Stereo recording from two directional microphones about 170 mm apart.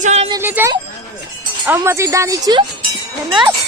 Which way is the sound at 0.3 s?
15° right (ahead or behind).